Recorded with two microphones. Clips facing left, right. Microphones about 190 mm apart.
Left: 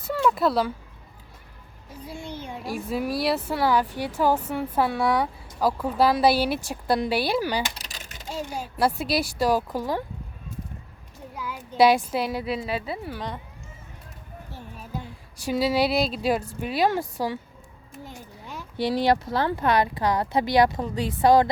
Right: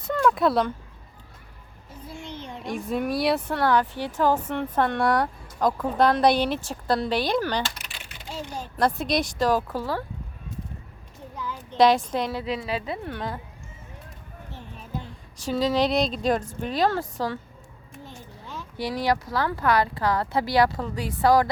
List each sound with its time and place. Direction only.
0.0 s a sound: 5° left (ahead or behind)
2.0 s speech: 10° left (ahead or behind)
7.8 s typing: 40° left (ahead or behind)
8.3 s speech: 10° left (ahead or behind)
11.3 s speech: 10° left (ahead or behind)
15.4 s speech: 10° left (ahead or behind)
18.0 s a sound: 10° left (ahead or behind)
18.8 s speech: 25° left (ahead or behind)